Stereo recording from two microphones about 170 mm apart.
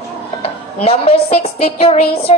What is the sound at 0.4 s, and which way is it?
Music, 35° left (ahead or behind).